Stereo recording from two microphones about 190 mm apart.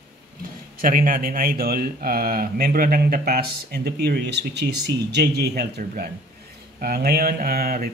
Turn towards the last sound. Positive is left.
turn(degrees=-50)  # may be behind; listen again after turning